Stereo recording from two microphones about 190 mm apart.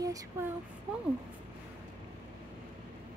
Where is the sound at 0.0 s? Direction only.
20° right (ahead or behind).